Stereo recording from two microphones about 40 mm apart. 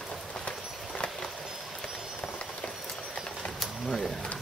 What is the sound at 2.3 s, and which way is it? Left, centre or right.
Run, centre.